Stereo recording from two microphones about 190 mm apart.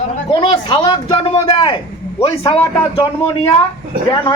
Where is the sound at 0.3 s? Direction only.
25° left (ahead or behind).